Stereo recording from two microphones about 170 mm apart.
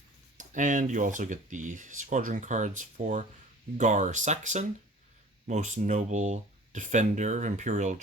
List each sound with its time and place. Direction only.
0.3 s speech: 50° right (ahead or behind)